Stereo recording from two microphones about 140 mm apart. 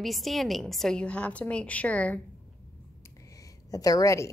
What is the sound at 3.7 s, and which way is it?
Speech, 25° left (ahead or behind).